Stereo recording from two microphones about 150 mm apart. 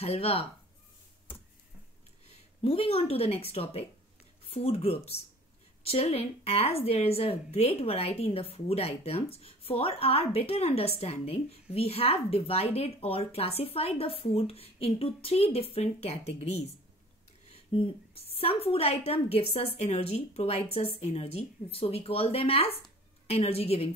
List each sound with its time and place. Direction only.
0.0 s a woman's voice: 40° left (ahead or behind)
2.2 s a woman's voice: 40° left (ahead or behind)
17.5 s a woman's voice: 40° left (ahead or behind)